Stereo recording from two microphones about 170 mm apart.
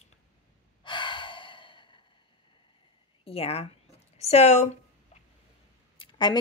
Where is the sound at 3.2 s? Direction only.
35° left (ahead or behind).